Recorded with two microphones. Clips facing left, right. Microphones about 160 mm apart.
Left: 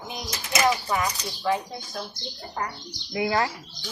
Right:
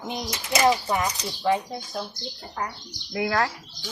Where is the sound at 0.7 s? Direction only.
20° right (ahead or behind).